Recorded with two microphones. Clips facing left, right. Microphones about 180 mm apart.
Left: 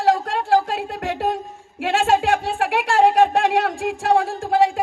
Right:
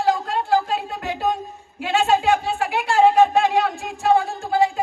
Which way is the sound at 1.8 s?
80° left.